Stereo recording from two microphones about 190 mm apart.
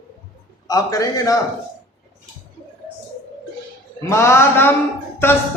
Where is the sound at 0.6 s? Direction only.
20° left (ahead or behind).